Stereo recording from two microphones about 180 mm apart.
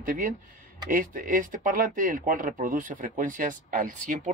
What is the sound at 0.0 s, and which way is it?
Speech, 50° right (ahead or behind).